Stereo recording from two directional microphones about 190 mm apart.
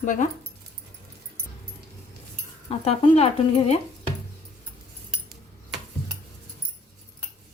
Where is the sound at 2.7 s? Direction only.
30° left (ahead or behind).